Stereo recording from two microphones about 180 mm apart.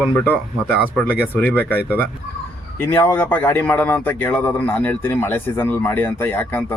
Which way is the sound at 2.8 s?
15° left (ahead or behind).